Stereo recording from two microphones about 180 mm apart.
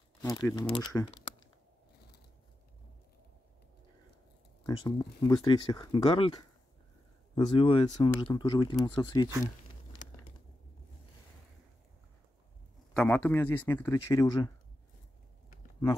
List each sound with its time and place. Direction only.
0.2 s speech: 20° left (ahead or behind)
4.6 s speech: 25° left (ahead or behind)
12.9 s speech: 10° left (ahead or behind)